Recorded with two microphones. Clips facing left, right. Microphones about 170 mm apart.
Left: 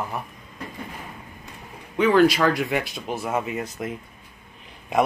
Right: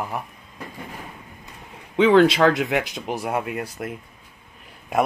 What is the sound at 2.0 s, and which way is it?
Speech, 25° right (ahead or behind).